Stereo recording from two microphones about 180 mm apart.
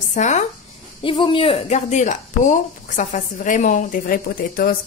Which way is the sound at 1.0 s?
30° left (ahead or behind).